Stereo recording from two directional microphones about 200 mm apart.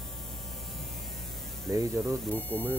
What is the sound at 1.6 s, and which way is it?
Speech, 15° right (ahead or behind).